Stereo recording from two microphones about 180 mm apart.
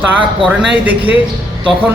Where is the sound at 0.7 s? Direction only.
10° right (ahead or behind).